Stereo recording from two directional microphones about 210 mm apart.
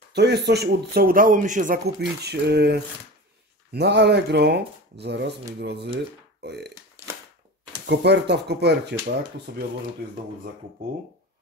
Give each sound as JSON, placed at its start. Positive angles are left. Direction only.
{"t": 0.1, "sound": "speech", "side_deg": -50}
{"t": 7.8, "sound": "speech", "side_deg": -55}